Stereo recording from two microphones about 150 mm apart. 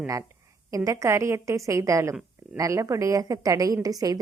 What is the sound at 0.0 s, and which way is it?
A woman's voice, 20° right (ahead or behind).